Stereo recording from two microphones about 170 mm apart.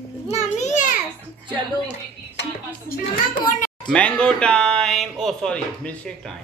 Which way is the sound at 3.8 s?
5° left (ahead or behind).